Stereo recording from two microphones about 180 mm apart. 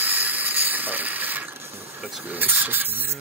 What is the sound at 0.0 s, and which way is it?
Ratchet, 10° right (ahead or behind).